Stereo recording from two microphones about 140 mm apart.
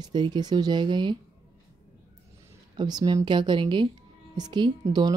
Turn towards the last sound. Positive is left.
turn(degrees=-30)  # may be behind; listen again after turning